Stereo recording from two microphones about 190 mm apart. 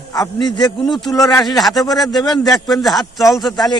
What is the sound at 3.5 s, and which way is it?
Speech, 20° left (ahead or behind).